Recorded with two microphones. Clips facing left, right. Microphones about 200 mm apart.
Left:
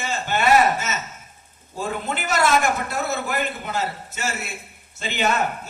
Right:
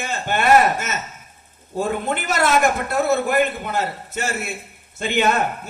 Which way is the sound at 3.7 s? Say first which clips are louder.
Right 3 dB; 55° right (ahead or behind).